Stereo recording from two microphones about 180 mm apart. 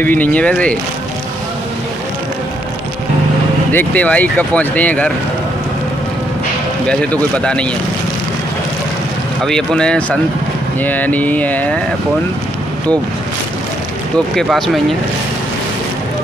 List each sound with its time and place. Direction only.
0.0 s speech: 10° left (ahead or behind)
3.7 s speech: 10° left (ahead or behind)
6.9 s speech: 5° left (ahead or behind)
9.4 s speech: 5° left (ahead or behind)
14.1 s speech: centre (ahead or behind)